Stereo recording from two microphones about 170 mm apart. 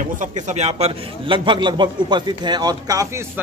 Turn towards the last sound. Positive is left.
turn(degrees=-20)  # may be behind; listen again after turning